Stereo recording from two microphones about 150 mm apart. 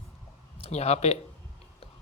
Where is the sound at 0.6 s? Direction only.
45° left (ahead or behind).